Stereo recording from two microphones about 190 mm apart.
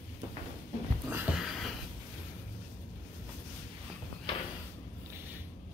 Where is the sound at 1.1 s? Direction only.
5° right (ahead or behind).